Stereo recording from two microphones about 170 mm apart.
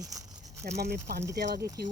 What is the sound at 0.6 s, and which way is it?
Speech, 70° right (ahead or behind).